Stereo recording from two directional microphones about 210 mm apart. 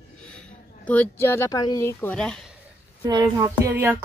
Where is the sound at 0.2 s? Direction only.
5° left (ahead or behind).